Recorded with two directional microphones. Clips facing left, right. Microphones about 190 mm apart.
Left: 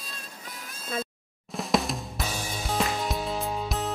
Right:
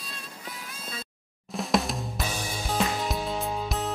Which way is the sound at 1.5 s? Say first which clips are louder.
Even; centre (ahead or behind).